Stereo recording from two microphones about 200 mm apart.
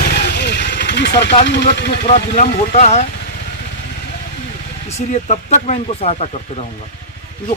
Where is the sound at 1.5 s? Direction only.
60° left (ahead or behind).